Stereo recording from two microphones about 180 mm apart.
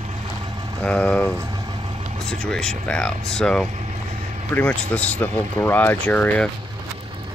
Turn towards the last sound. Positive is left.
turn(degrees=10)  # may be behind; listen again after turning